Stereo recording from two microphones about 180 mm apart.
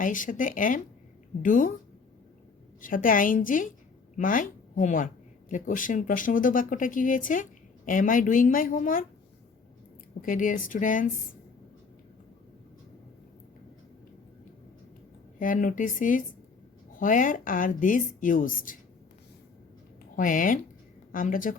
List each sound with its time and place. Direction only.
0.0 s a woman's voice: 45° left (ahead or behind)
2.8 s a woman's voice: 50° left (ahead or behind)
10.2 s a woman's voice: 50° left (ahead or behind)
15.4 s a woman's voice: 45° left (ahead or behind)
20.1 s a woman's voice: 45° left (ahead or behind)